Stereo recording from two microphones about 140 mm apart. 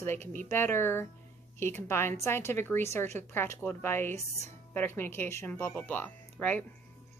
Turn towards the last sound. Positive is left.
turn(degrees=10)  # may be behind; listen again after turning